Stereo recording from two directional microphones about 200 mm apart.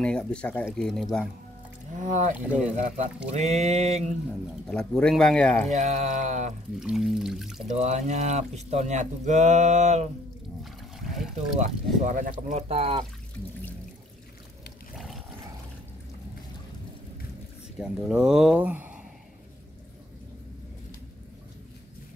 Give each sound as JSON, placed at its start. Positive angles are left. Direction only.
{"t": 0.0, "sound": "speech", "side_deg": 5}
{"t": 2.0, "sound": "speech", "side_deg": -40}
{"t": 2.3, "sound": "speech", "side_deg": -5}
{"t": 3.3, "sound": "speech", "side_deg": -35}
{"t": 4.6, "sound": "speech", "side_deg": 5}
{"t": 5.7, "sound": "speech", "side_deg": -35}
{"t": 6.8, "sound": "speech", "side_deg": 0}
{"t": 7.7, "sound": "speech", "side_deg": -35}
{"t": 10.6, "sound": "trickle", "side_deg": 0}
{"t": 11.6, "sound": "speech", "side_deg": -40}
{"t": 17.7, "sound": "speech", "side_deg": -5}